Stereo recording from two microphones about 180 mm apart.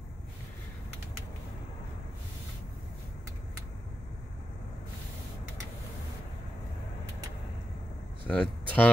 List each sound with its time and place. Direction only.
8.3 s speech: 5° left (ahead or behind)